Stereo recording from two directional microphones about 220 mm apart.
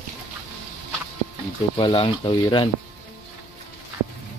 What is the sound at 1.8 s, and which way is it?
Speech, 25° left (ahead or behind).